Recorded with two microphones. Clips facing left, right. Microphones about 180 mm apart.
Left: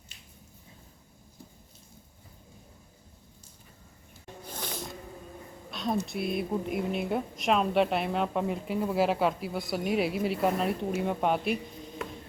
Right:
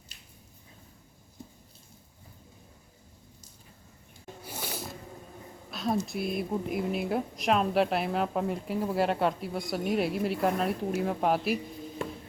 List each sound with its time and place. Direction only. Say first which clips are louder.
4.4 s music: even; 10° right (ahead or behind)
5.7 s a sound: right 1 dB; centre (ahead or behind)
6.1 s speech: left 1 dB; centre (ahead or behind)